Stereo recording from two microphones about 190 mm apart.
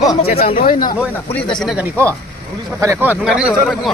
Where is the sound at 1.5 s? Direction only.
Centre (ahead or behind).